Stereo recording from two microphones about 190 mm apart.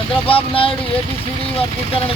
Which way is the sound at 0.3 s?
30° left (ahead or behind).